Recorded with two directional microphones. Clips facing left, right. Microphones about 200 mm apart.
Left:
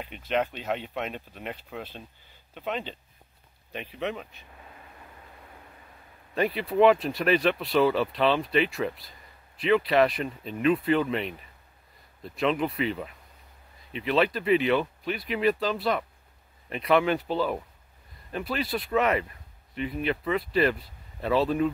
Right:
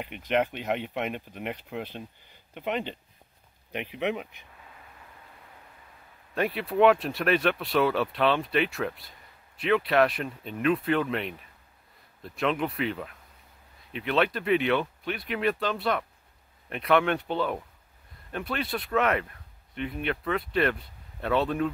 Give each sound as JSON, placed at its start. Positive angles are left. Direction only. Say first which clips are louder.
{"t": 0.2, "sound": "speech", "louder": "right 1 dB", "side_deg": -15}
{"t": 6.3, "sound": "speech", "louder": "left 2 dB", "side_deg": 0}